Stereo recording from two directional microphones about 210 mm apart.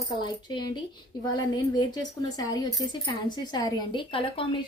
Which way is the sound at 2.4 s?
20° left (ahead or behind).